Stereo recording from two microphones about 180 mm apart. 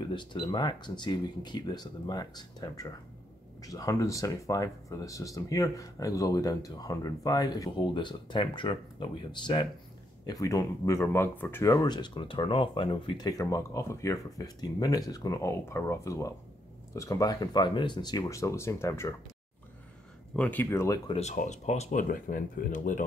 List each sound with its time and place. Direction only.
0.1 s speech: 25° left (ahead or behind)
20.3 s speech: 10° left (ahead or behind)
21.1 s speech: 40° left (ahead or behind)